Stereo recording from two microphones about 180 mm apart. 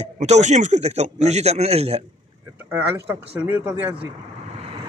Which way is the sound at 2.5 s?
10° right (ahead or behind).